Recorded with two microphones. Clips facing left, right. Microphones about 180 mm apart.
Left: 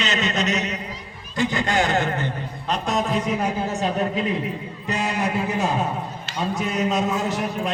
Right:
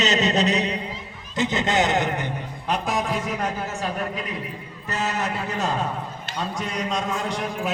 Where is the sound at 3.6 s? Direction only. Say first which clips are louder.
Left 5 dB; 30° left (ahead or behind).